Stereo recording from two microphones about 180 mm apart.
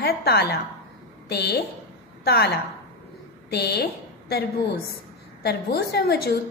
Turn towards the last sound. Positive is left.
turn(degrees=60)  # may be behind; listen again after turning